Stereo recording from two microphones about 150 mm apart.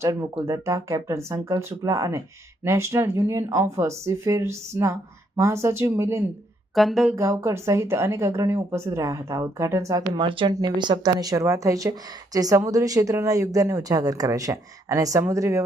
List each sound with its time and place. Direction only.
0.0 s speech: 20° right (ahead or behind)
6.7 s speech: centre (ahead or behind)
7.2 s speech: 20° right (ahead or behind)